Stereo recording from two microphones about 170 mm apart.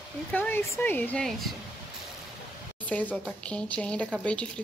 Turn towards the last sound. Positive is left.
turn(degrees=5)  # may be behind; listen again after turning